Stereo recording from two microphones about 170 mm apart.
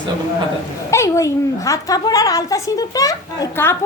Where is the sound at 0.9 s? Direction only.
15° left (ahead or behind).